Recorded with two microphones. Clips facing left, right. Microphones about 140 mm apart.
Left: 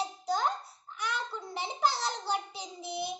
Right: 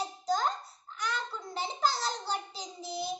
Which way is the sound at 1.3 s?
15° left (ahead or behind).